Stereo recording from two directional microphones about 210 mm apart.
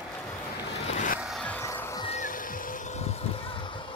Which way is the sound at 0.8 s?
35° left (ahead or behind).